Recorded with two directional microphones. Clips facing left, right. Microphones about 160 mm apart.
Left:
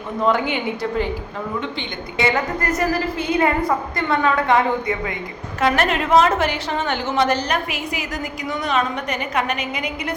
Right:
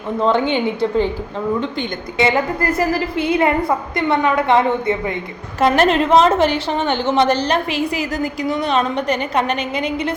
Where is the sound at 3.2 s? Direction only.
25° right (ahead or behind).